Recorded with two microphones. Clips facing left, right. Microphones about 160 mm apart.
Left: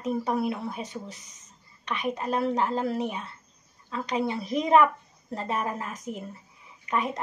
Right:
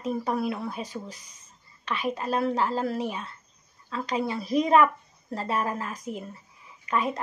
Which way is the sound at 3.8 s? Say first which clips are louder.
Even; 20° left (ahead or behind).